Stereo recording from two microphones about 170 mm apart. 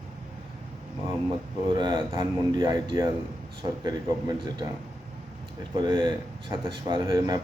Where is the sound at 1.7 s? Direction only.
25° right (ahead or behind).